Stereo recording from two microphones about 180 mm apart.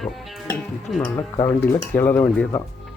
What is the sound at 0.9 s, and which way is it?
Speech, 5° left (ahead or behind).